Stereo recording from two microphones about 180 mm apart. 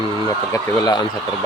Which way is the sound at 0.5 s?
25° left (ahead or behind).